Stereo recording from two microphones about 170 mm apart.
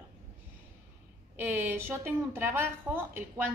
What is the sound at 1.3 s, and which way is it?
A woman's voice, 15° right (ahead or behind).